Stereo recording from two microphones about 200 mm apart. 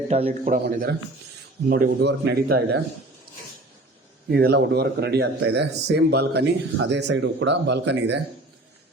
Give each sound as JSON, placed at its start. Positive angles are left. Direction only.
{"t": 0.1, "sound": "speech", "side_deg": -30}
{"t": 0.5, "sound": "speech", "side_deg": -45}
{"t": 4.3, "sound": "speech", "side_deg": -55}